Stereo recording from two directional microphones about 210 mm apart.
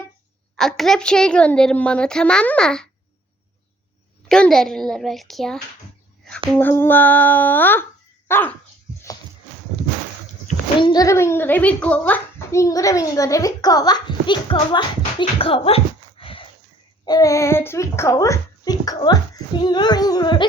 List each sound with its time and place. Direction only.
0.5 s speech: centre (ahead or behind)
4.3 s speech: 5° left (ahead or behind)
6.6 s a child's voice: 10° left (ahead or behind)
10.8 s a child's voice: 20° left (ahead or behind)
19.6 s music: 20° left (ahead or behind)